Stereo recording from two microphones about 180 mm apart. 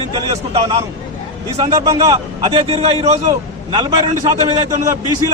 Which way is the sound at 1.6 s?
20° right (ahead or behind).